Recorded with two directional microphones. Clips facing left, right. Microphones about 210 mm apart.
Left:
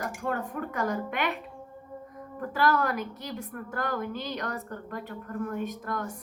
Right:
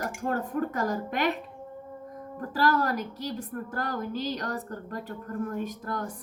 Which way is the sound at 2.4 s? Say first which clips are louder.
Even; 35° right (ahead or behind).